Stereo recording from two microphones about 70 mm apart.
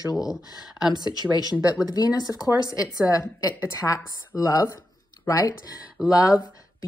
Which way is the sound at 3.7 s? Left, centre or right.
Left.